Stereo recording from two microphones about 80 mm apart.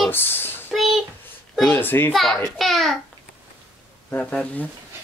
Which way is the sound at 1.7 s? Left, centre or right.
Left.